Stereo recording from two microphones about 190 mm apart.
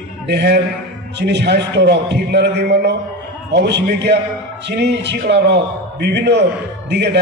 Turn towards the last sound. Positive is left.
turn(degrees=-65)  # may be behind; listen again after turning